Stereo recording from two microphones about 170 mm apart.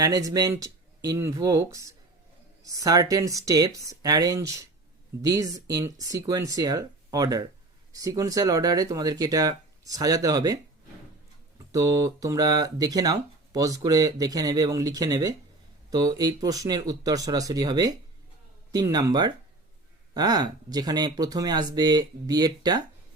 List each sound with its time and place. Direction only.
0.0 s speech: 20° right (ahead or behind)